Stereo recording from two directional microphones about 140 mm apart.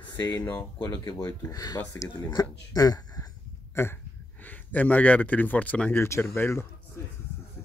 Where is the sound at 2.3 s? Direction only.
25° left (ahead or behind).